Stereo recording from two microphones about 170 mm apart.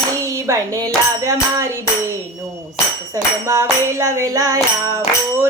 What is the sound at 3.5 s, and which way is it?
Music, 15° right (ahead or behind).